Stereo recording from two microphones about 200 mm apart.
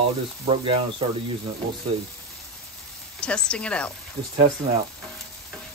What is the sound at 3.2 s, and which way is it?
Speech, 5° left (ahead or behind).